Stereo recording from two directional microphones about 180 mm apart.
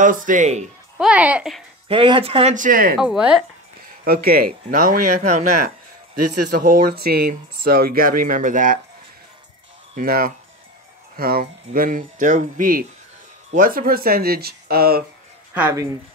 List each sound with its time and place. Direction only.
0.0 s speech: 45° right (ahead or behind)
0.9 s speech: 5° right (ahead or behind)
1.9 s speech: 30° right (ahead or behind)
2.5 s speech: 50° right (ahead or behind)
3.0 s speech: 5° right (ahead or behind)
4.0 s speech: 55° right (ahead or behind)
9.9 s speech: 55° right (ahead or behind)
15.7 s speech: 20° right (ahead or behind)